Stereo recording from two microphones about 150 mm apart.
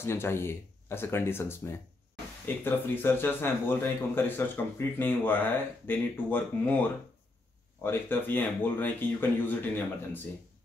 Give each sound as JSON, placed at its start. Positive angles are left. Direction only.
{"t": 0.0, "sound": "speech", "side_deg": 15}
{"t": 7.8, "sound": "speech", "side_deg": 15}